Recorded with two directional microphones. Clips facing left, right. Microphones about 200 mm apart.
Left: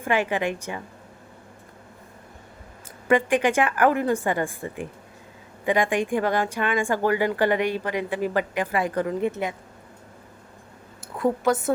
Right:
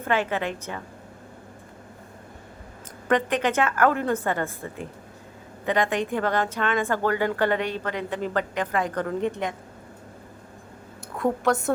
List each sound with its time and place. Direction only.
0.0 s a woman's voice: 15° left (ahead or behind)
3.1 s a woman's voice: 10° left (ahead or behind)
11.2 s a woman's voice: centre (ahead or behind)